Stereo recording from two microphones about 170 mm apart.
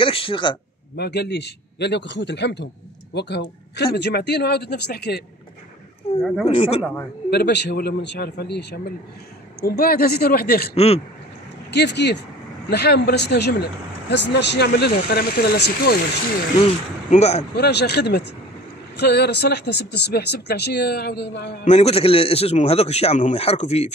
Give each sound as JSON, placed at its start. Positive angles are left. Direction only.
{"t": 0.0, "sound": "speech", "side_deg": 30}
{"t": 0.9, "sound": "a man's voice", "side_deg": 70}
{"t": 6.4, "sound": "a man's voice", "side_deg": 35}
{"t": 7.2, "sound": "speech", "side_deg": 75}
{"t": 9.6, "sound": "speech", "side_deg": 65}
{"t": 11.7, "sound": "a man's voice", "side_deg": 85}
{"t": 14.1, "sound": "speech", "side_deg": 90}
{"t": 17.1, "sound": "a man's voice", "side_deg": 40}
{"t": 17.6, "sound": "speech", "side_deg": 80}
{"t": 21.6, "sound": "a man's voice", "side_deg": 40}